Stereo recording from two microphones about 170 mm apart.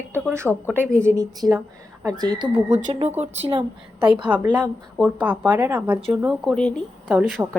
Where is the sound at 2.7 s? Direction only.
45° right (ahead or behind).